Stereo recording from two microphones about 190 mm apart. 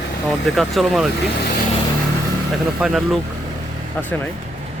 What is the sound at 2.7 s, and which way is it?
Speech, centre (ahead or behind).